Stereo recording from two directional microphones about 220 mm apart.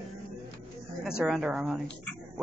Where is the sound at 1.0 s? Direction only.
Centre (ahead or behind).